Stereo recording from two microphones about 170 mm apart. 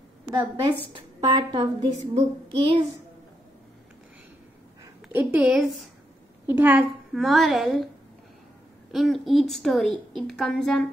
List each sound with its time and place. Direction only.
0.3 s a woman's voice: 25° right (ahead or behind)
2.0 s child singing: 30° right (ahead or behind)
5.1 s a woman's voice: 5° right (ahead or behind)
8.9 s a woman's voice: centre (ahead or behind)